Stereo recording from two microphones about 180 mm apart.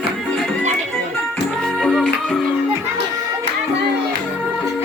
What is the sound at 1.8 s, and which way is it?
Music, centre (ahead or behind).